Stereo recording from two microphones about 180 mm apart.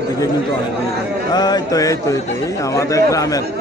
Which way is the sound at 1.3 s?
20° left (ahead or behind).